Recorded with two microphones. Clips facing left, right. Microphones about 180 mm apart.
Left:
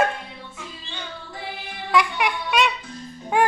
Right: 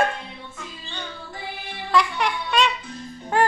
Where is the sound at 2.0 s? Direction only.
15° left (ahead or behind).